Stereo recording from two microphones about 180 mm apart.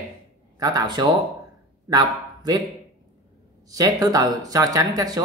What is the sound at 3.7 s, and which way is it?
Speech, 20° right (ahead or behind).